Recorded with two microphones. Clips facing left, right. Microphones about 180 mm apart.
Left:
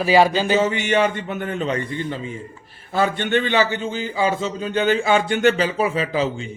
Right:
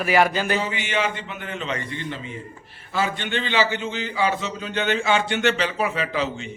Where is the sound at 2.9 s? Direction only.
55° left (ahead or behind); by 6.2 s 35° left (ahead or behind).